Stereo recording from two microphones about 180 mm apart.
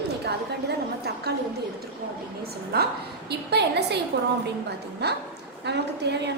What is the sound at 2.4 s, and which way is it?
A woman's voice, 60° right (ahead or behind).